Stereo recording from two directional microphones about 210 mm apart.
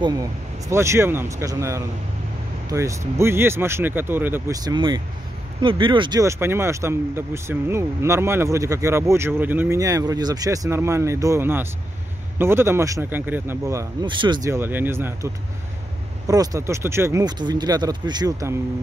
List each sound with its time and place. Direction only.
0.0 s speech: 15° right (ahead or behind)